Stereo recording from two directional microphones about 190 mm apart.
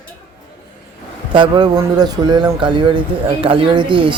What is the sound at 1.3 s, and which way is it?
Speech, 25° right (ahead or behind).